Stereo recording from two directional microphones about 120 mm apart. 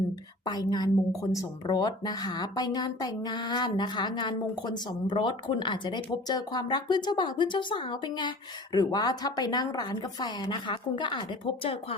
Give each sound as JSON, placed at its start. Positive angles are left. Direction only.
{"t": 0.4, "sound": "speech", "side_deg": 35}